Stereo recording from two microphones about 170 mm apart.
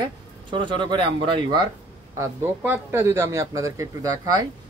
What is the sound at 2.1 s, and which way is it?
A man's voice, 15° right (ahead or behind).